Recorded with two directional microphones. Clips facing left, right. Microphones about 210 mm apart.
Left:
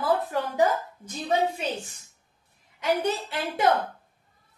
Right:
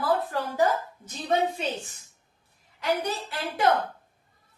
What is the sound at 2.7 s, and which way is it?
Speech, 25° left (ahead or behind).